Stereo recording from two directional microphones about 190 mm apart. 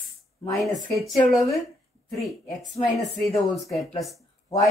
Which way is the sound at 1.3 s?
Centre (ahead or behind).